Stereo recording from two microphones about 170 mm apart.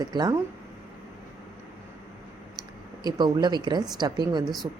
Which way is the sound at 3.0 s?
25° right (ahead or behind).